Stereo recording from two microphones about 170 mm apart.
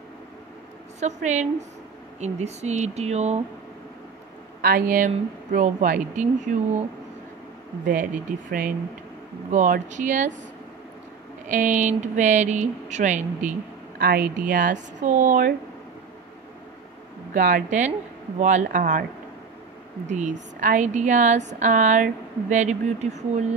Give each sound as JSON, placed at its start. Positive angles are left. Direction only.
{"t": 0.9, "sound": "speech", "side_deg": -45}
{"t": 4.6, "sound": "speech", "side_deg": -60}
{"t": 7.8, "sound": "speech", "side_deg": -50}
{"t": 11.4, "sound": "speech", "side_deg": -50}
{"t": 13.9, "sound": "a woman's voice", "side_deg": -65}
{"t": 14.5, "sound": "speech", "side_deg": -50}
{"t": 17.3, "sound": "speech", "side_deg": -55}
{"t": 20.1, "sound": "speech", "side_deg": -45}